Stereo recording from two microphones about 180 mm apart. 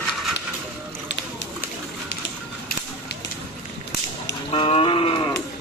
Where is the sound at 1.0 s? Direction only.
80° left.